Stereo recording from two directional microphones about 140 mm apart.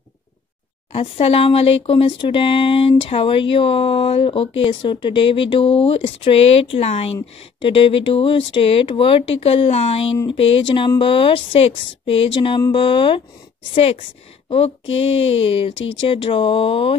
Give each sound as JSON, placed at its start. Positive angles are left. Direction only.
{"t": 0.9, "sound": "speech", "side_deg": 45}
{"t": 14.5, "sound": "speech", "side_deg": 45}